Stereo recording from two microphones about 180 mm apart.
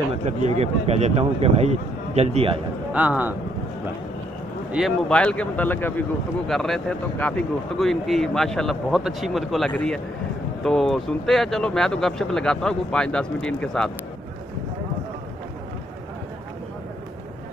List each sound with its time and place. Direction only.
0.4 s speech: 35° right (ahead or behind)
2.9 s speech: 5° right (ahead or behind)
4.7 s speech: centre (ahead or behind)